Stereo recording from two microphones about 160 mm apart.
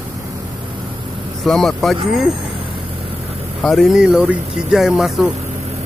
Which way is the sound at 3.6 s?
Centre (ahead or behind).